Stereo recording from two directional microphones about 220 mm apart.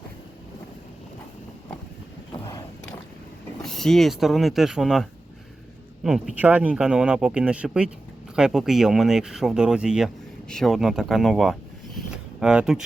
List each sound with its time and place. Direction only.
2.3 s vehicle: 20° left (ahead or behind)
3.6 s speech: centre (ahead or behind)
11.9 s a sound: 5° right (ahead or behind)